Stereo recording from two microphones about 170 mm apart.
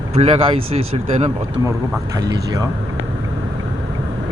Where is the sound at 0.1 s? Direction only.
35° right (ahead or behind).